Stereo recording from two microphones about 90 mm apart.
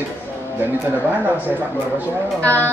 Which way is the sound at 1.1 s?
15° right (ahead or behind).